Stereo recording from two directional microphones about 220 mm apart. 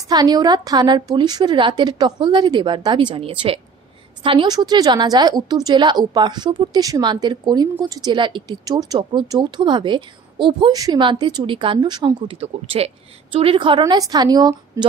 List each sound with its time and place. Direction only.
0.1 s speech: 15° right (ahead or behind)